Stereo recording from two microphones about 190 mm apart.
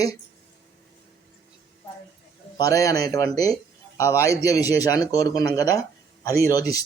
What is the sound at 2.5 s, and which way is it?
A man's voice, 20° left (ahead or behind).